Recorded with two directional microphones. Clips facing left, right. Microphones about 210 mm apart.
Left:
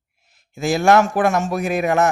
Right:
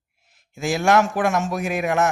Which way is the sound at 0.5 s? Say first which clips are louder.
Left 3 dB; 35° left (ahead or behind).